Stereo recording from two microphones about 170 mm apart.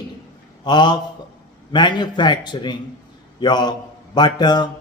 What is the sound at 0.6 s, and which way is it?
A man's voice, 25° left (ahead or behind).